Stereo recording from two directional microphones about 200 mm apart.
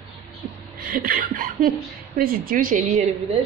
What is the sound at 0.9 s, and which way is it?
Speech, 45° right (ahead or behind).